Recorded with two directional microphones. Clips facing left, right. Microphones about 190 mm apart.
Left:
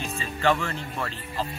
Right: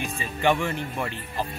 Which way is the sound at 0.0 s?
15° right (ahead or behind).